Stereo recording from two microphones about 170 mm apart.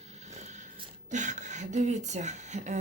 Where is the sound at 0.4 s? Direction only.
45° right (ahead or behind).